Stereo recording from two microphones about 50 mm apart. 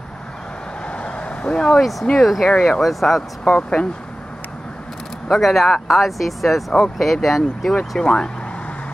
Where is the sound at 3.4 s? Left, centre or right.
Left.